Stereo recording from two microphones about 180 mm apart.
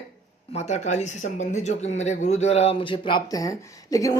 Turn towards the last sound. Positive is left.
turn(degrees=20)  # may be behind; listen again after turning